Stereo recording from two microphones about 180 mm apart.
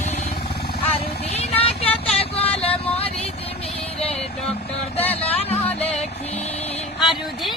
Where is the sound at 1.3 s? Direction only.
35° left (ahead or behind).